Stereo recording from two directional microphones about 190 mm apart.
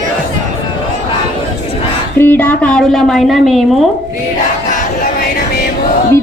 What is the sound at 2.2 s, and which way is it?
A woman's voice, 10° left (ahead or behind).